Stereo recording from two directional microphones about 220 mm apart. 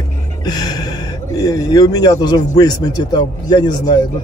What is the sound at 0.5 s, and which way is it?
Speech, 15° left (ahead or behind).